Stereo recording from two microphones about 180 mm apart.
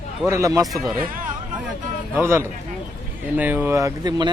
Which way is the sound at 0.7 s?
Centre (ahead or behind).